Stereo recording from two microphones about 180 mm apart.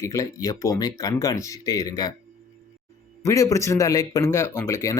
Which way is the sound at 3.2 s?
15° left (ahead or behind).